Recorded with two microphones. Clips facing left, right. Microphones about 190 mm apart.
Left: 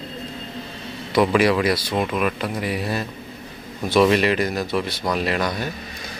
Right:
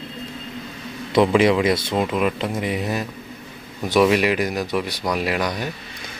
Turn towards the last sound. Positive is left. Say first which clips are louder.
# even
turn(degrees=-15)  # may be behind; listen again after turning